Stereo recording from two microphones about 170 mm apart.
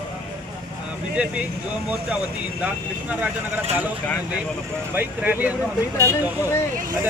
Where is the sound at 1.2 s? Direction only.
10° right (ahead or behind).